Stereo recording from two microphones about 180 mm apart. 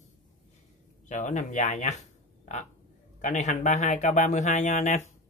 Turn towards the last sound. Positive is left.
turn(degrees=40)  # may be behind; listen again after turning